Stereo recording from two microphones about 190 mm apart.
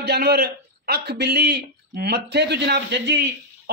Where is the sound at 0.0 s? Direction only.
60° right (ahead or behind).